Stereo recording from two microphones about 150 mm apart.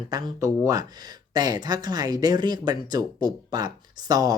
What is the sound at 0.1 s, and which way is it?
Speech, 25° right (ahead or behind).